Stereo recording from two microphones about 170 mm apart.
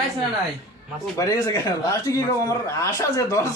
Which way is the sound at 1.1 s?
20° left (ahead or behind).